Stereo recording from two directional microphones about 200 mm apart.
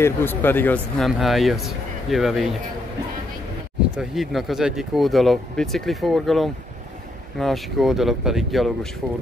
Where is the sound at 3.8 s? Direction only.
Centre (ahead or behind).